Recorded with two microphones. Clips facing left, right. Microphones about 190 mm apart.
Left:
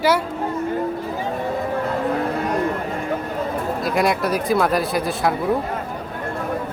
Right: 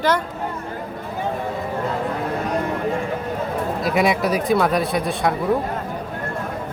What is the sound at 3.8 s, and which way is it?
Speech, centre (ahead or behind).